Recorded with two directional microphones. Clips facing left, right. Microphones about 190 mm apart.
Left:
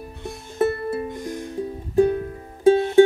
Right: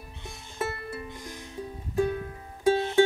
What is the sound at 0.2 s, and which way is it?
Music, 35° left (ahead or behind).